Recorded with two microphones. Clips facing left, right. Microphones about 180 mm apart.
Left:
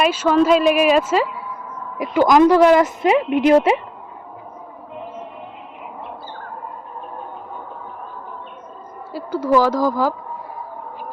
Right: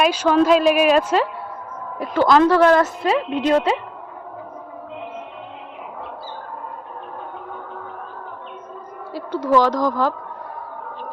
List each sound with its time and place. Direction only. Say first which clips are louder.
0.0 s a woman's voice: left 1 dB; 5° left (ahead or behind)
9.1 s speech: left 1 dB; 5° left (ahead or behind)